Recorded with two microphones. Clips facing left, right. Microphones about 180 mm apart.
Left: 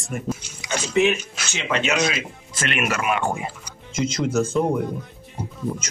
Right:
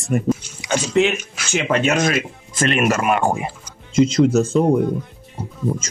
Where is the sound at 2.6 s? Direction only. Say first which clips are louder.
Right 6 dB; 40° right (ahead or behind).